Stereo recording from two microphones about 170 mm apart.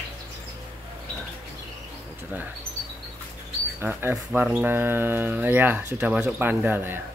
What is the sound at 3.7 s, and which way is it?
Speech, 10° right (ahead or behind).